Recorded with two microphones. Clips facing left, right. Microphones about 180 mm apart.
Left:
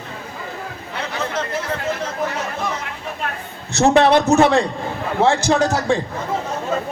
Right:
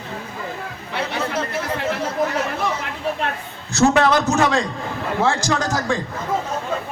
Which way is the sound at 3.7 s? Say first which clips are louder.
Left 2 dB; 30° left (ahead or behind).